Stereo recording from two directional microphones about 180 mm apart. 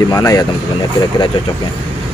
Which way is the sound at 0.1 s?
20° left (ahead or behind).